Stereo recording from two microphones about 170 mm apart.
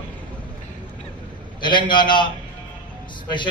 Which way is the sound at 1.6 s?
25° left (ahead or behind).